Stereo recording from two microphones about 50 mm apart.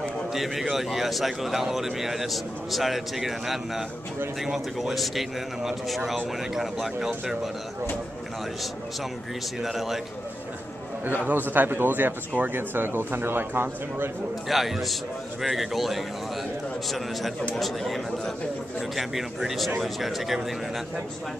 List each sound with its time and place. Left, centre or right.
0.3 s a man's voice: centre
9.6 s a man's voice: centre
11.2 s speech: right
14.5 s a man's voice: centre
17.6 s a man's voice: centre